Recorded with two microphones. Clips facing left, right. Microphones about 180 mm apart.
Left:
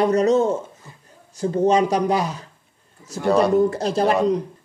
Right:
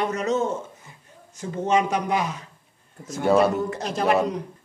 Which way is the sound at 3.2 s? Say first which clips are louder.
Left 1 dB; 5° right (ahead or behind).